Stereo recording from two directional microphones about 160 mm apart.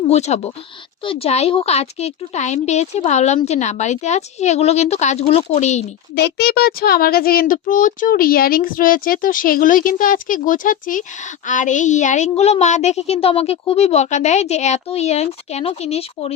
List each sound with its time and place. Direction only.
0.1 s speech: 45° left (ahead or behind)
6.1 s speech: 85° left; by 16.3 s 40° left (ahead or behind)